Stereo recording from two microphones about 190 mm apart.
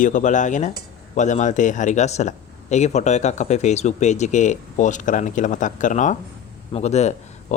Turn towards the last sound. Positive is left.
turn(degrees=35)  # may be behind; listen again after turning